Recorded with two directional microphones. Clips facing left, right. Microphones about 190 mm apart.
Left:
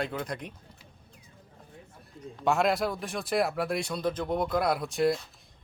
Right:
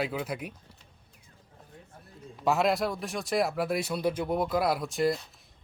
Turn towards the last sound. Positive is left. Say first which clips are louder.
# left 1 dB
turn(degrees=0)  # may be behind; listen again after turning